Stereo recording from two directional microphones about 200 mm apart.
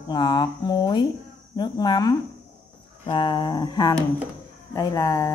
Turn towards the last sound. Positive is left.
turn(degrees=15)  # may be behind; listen again after turning